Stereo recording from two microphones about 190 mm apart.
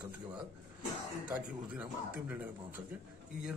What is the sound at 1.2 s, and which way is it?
Speech, 5° right (ahead or behind).